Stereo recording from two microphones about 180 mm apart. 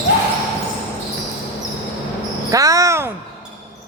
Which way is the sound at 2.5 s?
20° right (ahead or behind).